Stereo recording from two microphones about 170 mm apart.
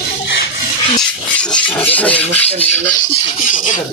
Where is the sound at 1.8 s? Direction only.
10° left (ahead or behind).